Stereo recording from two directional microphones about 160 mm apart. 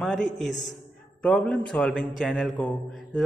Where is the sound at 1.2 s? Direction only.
5° left (ahead or behind).